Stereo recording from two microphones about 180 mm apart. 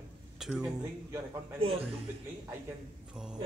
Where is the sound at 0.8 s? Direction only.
15° right (ahead or behind).